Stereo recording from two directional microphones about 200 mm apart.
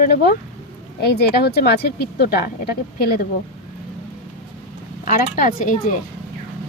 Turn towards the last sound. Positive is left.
turn(degrees=45)  # may be behind; listen again after turning